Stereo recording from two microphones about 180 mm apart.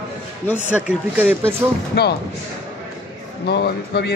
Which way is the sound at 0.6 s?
5° right (ahead or behind).